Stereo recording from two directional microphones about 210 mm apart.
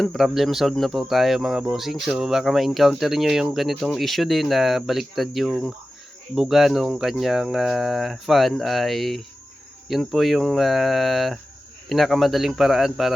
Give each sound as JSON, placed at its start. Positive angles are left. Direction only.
{"t": 0.0, "sound": "speech", "side_deg": 0}